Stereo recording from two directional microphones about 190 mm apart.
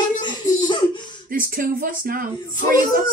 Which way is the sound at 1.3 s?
50° right (ahead or behind).